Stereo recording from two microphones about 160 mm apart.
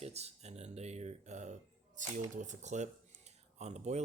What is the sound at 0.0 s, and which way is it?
Speech, 40° right (ahead or behind).